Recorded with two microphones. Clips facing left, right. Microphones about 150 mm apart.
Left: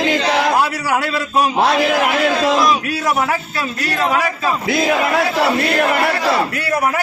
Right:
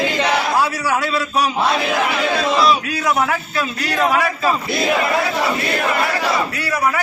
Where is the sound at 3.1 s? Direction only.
5° left (ahead or behind).